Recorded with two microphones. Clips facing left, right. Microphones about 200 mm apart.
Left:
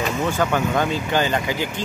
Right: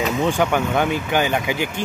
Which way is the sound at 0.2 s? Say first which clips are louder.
Right 1 dB; 15° right (ahead or behind).